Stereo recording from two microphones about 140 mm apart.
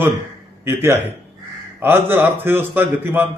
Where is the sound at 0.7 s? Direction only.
15° right (ahead or behind).